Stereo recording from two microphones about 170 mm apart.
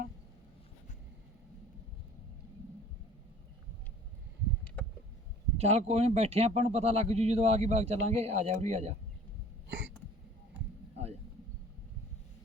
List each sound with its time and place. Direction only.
5.5 s speech: 40° right (ahead or behind)
9.6 s hiccup: 90° right